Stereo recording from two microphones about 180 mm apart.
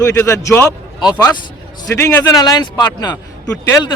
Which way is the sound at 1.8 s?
15° left (ahead or behind).